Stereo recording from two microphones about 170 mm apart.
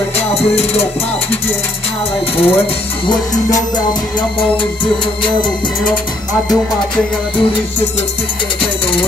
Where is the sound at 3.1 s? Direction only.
20° left (ahead or behind).